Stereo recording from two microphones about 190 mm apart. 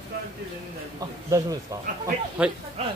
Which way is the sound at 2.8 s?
30° right (ahead or behind).